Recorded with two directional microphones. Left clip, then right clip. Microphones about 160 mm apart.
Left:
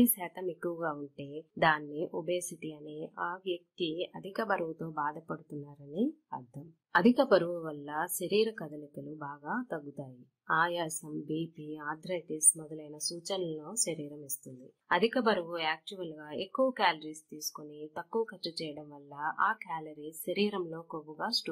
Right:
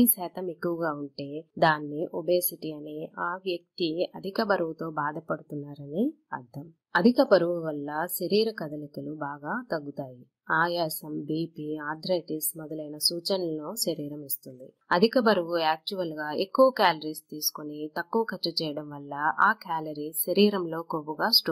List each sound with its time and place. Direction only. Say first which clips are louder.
0.0 s a woman's voice: right 4 dB; 20° right (ahead or behind)